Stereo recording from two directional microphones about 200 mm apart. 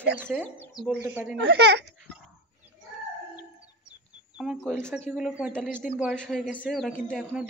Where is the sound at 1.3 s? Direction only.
55° right (ahead or behind).